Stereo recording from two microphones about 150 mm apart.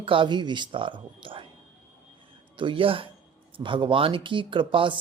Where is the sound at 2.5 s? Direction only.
35° right (ahead or behind).